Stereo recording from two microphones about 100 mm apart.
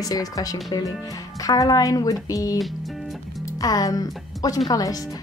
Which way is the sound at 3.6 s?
40° left (ahead or behind).